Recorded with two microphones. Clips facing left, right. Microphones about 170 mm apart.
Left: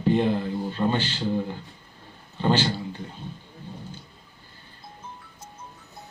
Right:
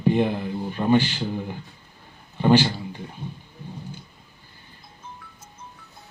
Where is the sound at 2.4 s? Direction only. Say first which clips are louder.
Right 5 dB; 15° right (ahead or behind).